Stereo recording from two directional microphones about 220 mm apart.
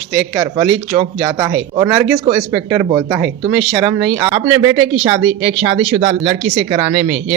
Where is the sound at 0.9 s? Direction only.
20° right (ahead or behind).